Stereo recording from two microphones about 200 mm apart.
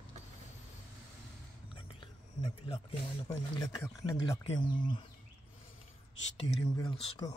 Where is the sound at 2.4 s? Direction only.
25° left (ahead or behind).